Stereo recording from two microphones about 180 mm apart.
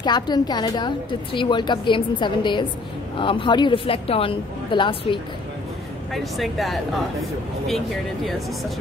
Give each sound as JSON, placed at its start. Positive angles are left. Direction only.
{"t": 0.0, "sound": "a woman's voice", "side_deg": 25}
{"t": 6.1, "sound": "speech", "side_deg": 0}